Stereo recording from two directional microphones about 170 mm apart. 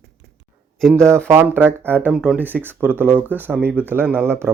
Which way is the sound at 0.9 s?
15° right (ahead or behind).